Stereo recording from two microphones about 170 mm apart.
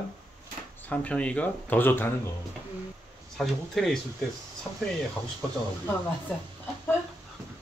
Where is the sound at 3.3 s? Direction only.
Centre (ahead or behind).